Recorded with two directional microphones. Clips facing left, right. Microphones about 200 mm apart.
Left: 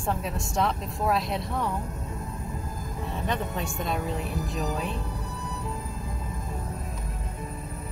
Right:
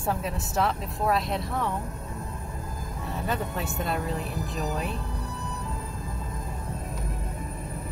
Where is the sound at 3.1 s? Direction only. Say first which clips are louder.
Even; 5° right (ahead or behind).